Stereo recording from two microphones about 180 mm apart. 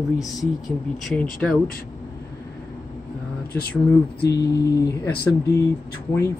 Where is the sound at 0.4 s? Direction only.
Centre (ahead or behind).